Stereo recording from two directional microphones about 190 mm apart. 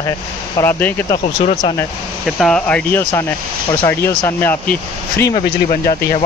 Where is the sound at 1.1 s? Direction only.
40° left (ahead or behind).